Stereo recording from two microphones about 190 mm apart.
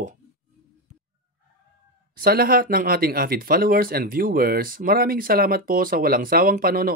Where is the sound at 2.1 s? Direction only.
55° right (ahead or behind).